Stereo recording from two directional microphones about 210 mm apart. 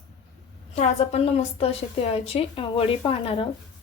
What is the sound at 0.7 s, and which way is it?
A woman's voice, 30° left (ahead or behind).